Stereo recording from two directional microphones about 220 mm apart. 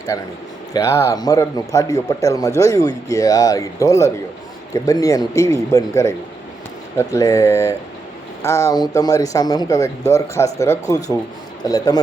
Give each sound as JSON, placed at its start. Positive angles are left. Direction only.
{"t": 0.1, "sound": "speech", "side_deg": 15}